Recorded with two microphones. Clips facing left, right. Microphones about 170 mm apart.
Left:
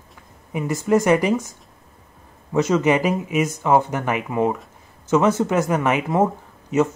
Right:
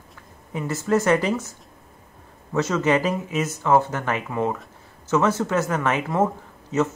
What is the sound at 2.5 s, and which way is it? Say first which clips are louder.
Speech: left 3 dB; 15° left (ahead or behind).